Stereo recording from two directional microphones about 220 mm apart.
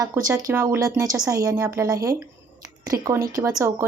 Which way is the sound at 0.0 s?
15° right (ahead or behind).